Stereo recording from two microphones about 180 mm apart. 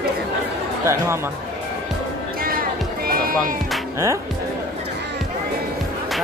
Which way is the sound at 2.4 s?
55° right (ahead or behind).